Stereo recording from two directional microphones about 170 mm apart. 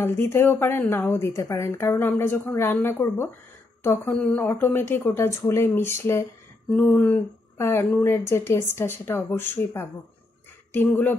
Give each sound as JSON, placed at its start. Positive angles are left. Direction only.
{"t": 0.0, "sound": "a woman's voice", "side_deg": 15}